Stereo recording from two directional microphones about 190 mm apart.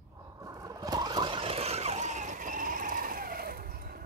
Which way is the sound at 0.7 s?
20° right (ahead or behind).